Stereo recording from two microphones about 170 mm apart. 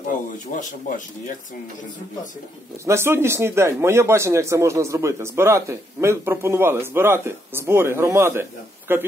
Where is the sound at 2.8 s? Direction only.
15° right (ahead or behind).